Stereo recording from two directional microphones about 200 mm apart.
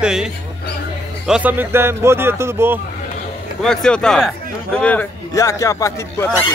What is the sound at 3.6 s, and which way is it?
A man's voice, 5° left (ahead or behind).